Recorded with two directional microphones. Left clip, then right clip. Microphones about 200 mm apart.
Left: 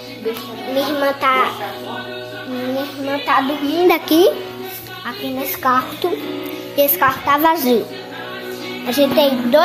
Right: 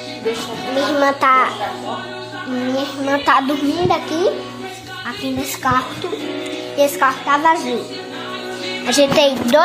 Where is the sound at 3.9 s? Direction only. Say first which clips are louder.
Left 6 dB; 45° left (ahead or behind).